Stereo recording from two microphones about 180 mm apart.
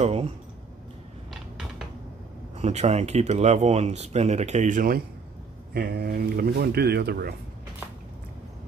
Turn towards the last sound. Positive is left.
turn(degrees=-60)  # may be behind; listen again after turning